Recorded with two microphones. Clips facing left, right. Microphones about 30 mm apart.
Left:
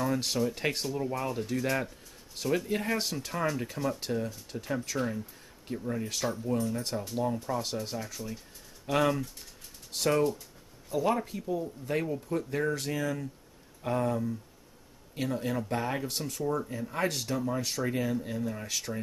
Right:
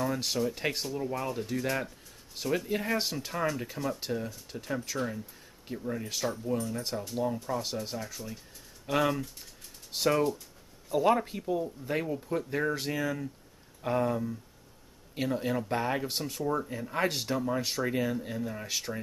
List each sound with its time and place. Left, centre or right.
0.0 s speech: centre
10.9 s speech: centre